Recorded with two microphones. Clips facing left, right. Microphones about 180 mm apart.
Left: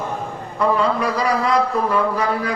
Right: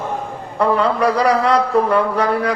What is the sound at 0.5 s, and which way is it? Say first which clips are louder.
A man's voice: right 2 dB; 65° right (ahead or behind).